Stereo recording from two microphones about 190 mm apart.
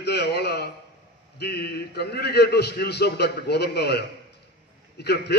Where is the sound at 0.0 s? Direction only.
60° left (ahead or behind).